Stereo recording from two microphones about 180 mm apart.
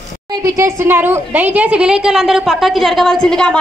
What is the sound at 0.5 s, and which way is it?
A woman's voice, 15° right (ahead or behind).